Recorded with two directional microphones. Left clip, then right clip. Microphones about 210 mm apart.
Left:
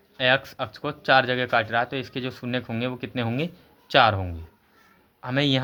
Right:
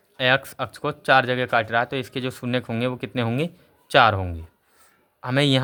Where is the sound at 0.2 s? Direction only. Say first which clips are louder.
Right 1 dB; 20° right (ahead or behind).